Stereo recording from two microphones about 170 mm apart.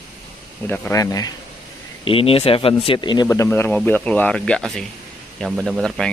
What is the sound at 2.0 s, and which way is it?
A man's voice, 30° left (ahead or behind).